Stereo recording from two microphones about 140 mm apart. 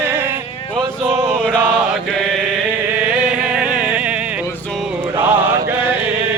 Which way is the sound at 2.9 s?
10° right (ahead or behind).